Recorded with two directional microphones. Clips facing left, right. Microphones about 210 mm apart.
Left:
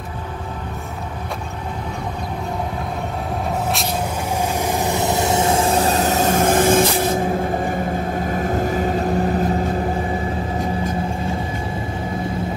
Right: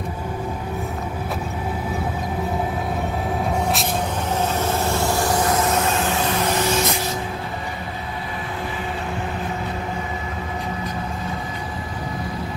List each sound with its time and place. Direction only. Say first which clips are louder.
4.6 s vehicle: left 1 dB; 15° left (ahead or behind); by 6.8 s 50° left (ahead or behind)
8.2 s vehicle: left 9 dB; 45° left (ahead or behind)